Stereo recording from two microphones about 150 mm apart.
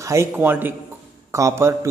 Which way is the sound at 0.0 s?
20° right (ahead or behind).